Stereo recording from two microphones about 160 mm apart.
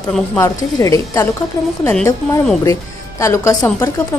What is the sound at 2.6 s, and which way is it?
A woman's voice, 20° left (ahead or behind).